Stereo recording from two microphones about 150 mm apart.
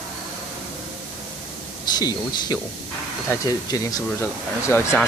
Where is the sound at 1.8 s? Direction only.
30° left (ahead or behind).